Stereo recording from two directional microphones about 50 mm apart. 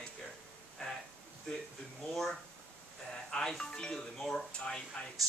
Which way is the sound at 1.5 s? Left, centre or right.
Centre.